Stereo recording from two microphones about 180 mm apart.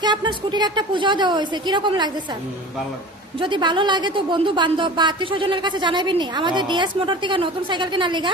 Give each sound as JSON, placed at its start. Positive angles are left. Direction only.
{"t": 0.0, "sound": "a woman's voice", "side_deg": -25}
{"t": 3.4, "sound": "a woman's voice", "side_deg": -25}